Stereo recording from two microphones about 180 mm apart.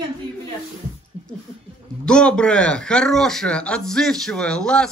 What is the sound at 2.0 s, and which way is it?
A man's voice, 5° left (ahead or behind).